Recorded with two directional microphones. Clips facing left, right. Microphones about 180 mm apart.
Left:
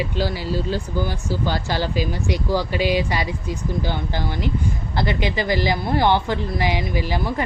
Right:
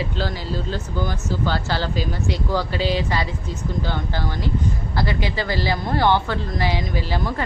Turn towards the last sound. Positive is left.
turn(degrees=15)  # may be behind; listen again after turning